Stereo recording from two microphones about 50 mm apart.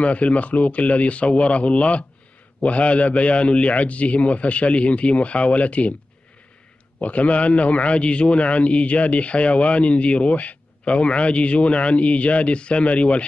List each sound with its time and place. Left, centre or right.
0.0 s a man's voice: left
7.0 s a man's voice: left